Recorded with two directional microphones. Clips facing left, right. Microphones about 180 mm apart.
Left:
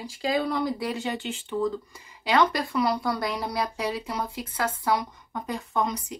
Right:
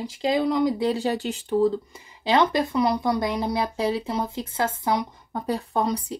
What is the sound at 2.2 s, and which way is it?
Speech, 25° right (ahead or behind).